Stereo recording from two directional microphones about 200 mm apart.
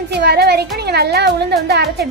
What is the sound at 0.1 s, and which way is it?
A child's voice, 55° right (ahead or behind).